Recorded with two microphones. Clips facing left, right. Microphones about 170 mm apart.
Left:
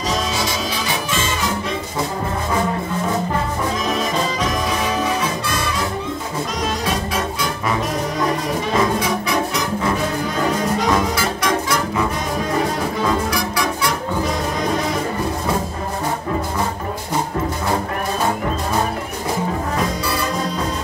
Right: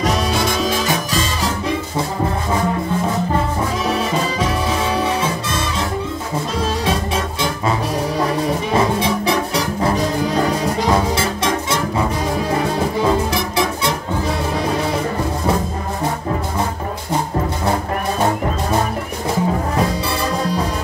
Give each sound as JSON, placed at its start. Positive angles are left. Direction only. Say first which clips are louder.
{"t": 0.0, "sound": "music", "louder": "right 3 dB", "side_deg": -55}
{"t": 8.7, "sound": "music", "louder": "right 1 dB", "side_deg": -30}
{"t": 13.0, "sound": "music", "louder": "right 1 dB", "side_deg": -25}